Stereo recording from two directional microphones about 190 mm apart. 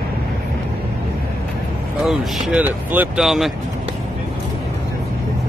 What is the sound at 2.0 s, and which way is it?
Speech, 5° right (ahead or behind).